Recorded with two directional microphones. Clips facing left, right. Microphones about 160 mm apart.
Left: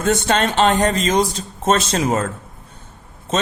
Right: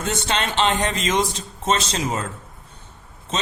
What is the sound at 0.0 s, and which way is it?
A man's voice, 50° left (ahead or behind).